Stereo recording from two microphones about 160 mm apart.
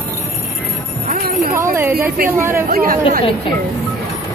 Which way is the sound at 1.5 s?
15° right (ahead or behind).